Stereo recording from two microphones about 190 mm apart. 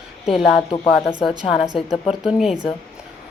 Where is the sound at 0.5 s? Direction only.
25° left (ahead or behind).